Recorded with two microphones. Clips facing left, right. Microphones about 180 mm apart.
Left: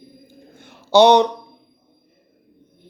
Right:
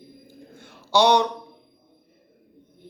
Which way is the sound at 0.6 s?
20° left (ahead or behind).